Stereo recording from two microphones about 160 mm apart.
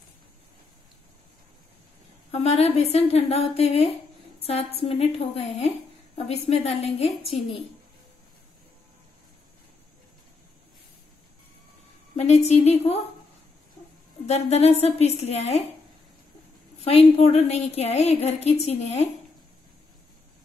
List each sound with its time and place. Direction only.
2.3 s a woman's voice: 40° left (ahead or behind)
12.2 s a woman's voice: 40° left (ahead or behind)
14.2 s a woman's voice: 40° left (ahead or behind)
16.8 s a woman's voice: 40° left (ahead or behind)